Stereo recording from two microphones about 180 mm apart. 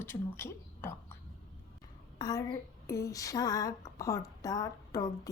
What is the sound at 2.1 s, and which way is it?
A woman's voice, 20° left (ahead or behind).